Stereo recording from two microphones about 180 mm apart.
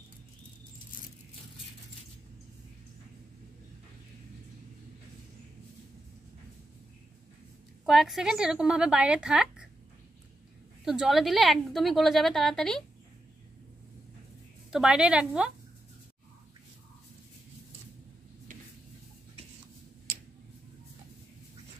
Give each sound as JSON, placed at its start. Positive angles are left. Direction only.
{"t": 7.8, "sound": "a woman's voice", "side_deg": 0}
{"t": 10.9, "sound": "a woman's voice", "side_deg": 0}
{"t": 14.7, "sound": "a woman's voice", "side_deg": -5}